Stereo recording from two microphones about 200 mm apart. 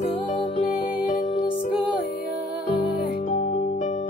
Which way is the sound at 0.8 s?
40° left (ahead or behind).